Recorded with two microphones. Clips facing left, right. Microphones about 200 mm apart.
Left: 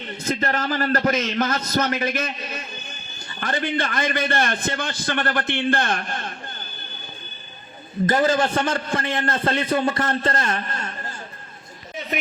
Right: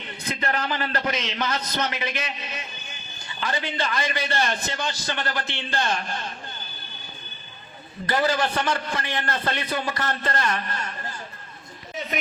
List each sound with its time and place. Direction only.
0.2 s a man's voice: 45° left (ahead or behind)
8.3 s a man's voice: 50° left (ahead or behind)
10.0 s a man's voice: 30° left (ahead or behind)
10.3 s a man's voice: 50° left (ahead or behind)